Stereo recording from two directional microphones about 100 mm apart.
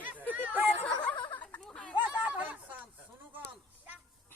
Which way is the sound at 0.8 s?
15° left (ahead or behind).